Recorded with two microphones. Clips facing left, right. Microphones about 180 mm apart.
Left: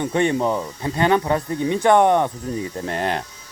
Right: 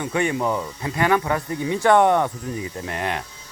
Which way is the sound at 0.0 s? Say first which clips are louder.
Left 3 dB; 30° left (ahead or behind).